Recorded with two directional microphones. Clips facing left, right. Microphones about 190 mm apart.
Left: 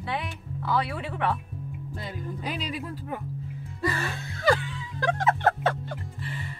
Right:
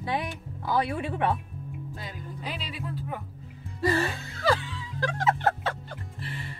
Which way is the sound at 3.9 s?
30° right (ahead or behind).